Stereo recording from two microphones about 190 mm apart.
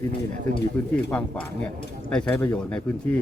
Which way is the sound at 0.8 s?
10° left (ahead or behind).